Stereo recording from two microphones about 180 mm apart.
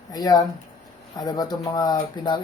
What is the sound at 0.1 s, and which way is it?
Speech, 20° left (ahead or behind).